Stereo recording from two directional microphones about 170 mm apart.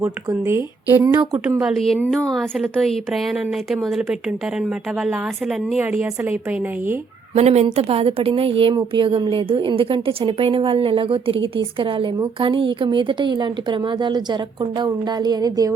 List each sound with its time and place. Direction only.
0.0 s a woman's voice: 15° right (ahead or behind)
1.5 s a woman's voice: 5° right (ahead or behind)
7.3 s a woman's voice: 40° right (ahead or behind); by 15.7 s 20° right (ahead or behind)